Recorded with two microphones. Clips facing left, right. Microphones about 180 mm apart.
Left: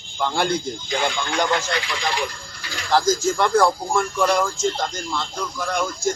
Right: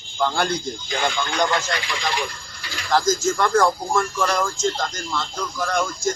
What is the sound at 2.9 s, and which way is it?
Speech, 15° left (ahead or behind).